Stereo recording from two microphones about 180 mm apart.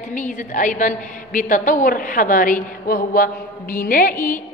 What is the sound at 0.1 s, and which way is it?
A woman's voice, 45° left (ahead or behind).